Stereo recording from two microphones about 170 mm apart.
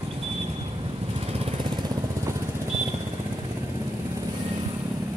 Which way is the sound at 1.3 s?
30° right (ahead or behind).